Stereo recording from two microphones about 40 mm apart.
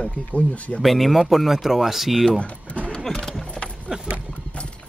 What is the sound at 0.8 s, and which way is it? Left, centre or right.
Speech, centre.